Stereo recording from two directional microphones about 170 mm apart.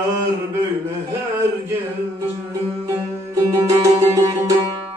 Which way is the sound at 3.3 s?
20° right (ahead or behind).